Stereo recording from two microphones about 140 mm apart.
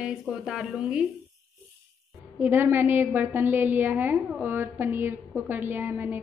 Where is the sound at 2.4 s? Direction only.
15° right (ahead or behind).